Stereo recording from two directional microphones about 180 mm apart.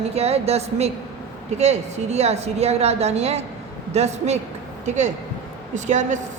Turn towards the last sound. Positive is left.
turn(degrees=-40)  # may be behind; listen again after turning